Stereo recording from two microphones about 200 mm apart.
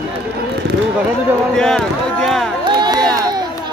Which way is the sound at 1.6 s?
5° left (ahead or behind).